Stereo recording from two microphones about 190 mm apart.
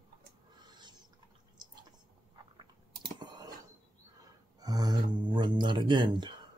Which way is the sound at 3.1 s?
20° right (ahead or behind).